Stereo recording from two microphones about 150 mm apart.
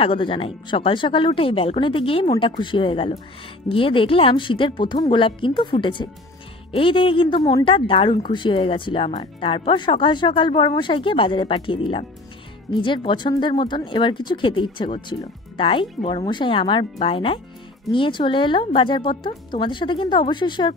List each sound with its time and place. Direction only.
0.0 s a woman's voice: 35° left (ahead or behind)